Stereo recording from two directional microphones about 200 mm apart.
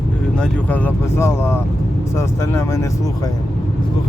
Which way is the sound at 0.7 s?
10° left (ahead or behind).